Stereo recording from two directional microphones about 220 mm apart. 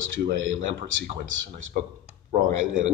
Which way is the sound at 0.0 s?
60° right (ahead or behind).